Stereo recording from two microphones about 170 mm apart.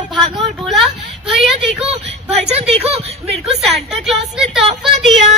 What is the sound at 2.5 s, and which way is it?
Speech, 40° right (ahead or behind).